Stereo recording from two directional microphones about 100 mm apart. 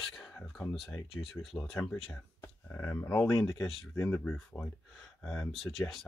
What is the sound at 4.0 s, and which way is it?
Speech, 25° left (ahead or behind).